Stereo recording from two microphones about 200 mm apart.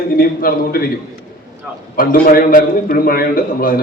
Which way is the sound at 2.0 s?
45° left (ahead or behind).